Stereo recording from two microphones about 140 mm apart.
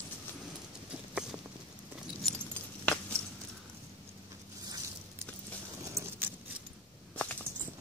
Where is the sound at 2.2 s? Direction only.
5° left (ahead or behind).